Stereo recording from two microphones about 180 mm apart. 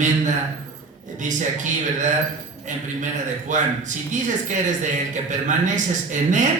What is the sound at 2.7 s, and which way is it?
Speech, 45° right (ahead or behind).